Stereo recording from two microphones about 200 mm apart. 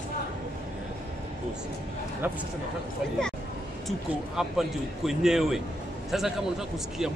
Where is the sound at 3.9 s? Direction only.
Centre (ahead or behind).